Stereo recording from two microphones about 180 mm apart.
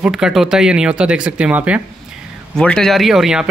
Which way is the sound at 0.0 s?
Centre (ahead or behind).